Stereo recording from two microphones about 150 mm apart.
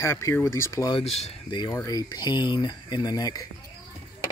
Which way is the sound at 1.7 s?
20° left (ahead or behind).